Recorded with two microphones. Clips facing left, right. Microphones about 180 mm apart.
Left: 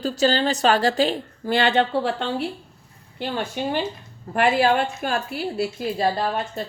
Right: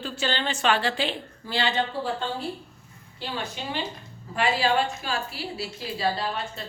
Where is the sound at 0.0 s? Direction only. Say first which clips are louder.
Left 8 dB; 40° left (ahead or behind); by 2.3 s 70° left (ahead or behind).